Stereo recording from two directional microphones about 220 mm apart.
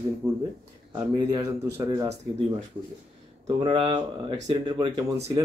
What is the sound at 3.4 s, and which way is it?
Speech, 20° right (ahead or behind).